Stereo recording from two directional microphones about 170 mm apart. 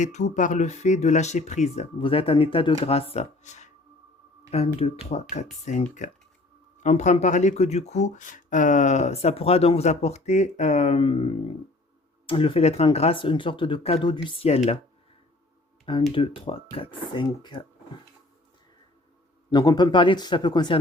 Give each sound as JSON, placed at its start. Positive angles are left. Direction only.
{"t": 0.0, "sound": "speech", "side_deg": 45}
{"t": 16.1, "sound": "speech", "side_deg": 30}
{"t": 19.5, "sound": "speech", "side_deg": 25}